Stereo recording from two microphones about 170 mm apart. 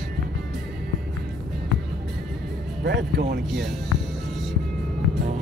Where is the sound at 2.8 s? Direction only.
80° right.